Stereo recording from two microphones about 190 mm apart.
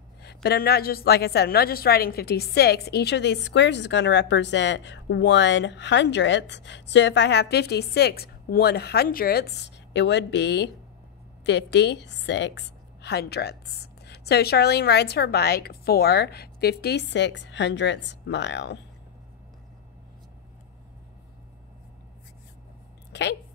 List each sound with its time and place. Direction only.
0.2 s a woman's voice: 60° left (ahead or behind)